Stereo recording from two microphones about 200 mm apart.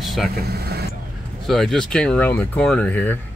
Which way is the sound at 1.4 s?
Centre (ahead or behind).